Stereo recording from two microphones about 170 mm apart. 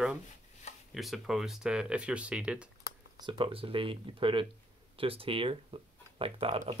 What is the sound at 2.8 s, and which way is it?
Speech, 25° right (ahead or behind).